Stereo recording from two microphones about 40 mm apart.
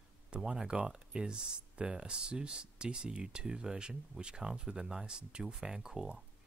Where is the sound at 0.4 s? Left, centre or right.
Centre.